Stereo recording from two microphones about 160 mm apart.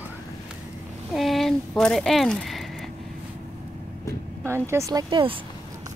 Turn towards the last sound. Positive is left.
turn(degrees=-30)  # may be behind; listen again after turning